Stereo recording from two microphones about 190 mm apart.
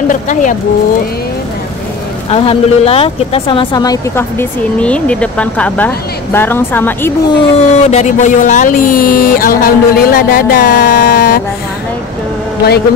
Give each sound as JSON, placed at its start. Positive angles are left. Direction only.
{"t": 0.1, "sound": "speech", "side_deg": 40}
{"t": 2.2, "sound": "speech", "side_deg": 30}
{"t": 7.2, "sound": "speech", "side_deg": 35}